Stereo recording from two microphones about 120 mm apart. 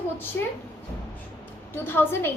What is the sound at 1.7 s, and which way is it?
Speech, 15° left (ahead or behind).